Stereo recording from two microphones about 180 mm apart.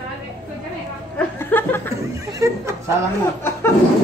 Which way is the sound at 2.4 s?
15° right (ahead or behind).